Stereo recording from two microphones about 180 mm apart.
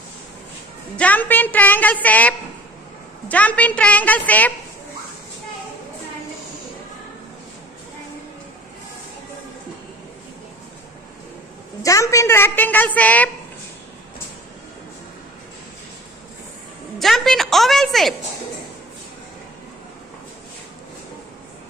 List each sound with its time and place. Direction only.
0.9 s a woman's voice: 10° left (ahead or behind)
11.8 s a woman's voice: 15° left (ahead or behind)
17.0 s a woman's voice: centre (ahead or behind)